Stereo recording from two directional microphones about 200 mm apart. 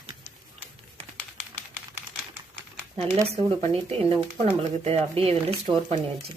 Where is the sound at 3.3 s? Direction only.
30° right (ahead or behind).